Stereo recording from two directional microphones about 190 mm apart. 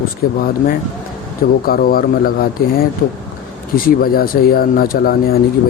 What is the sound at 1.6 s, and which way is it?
Speech, 50° left (ahead or behind).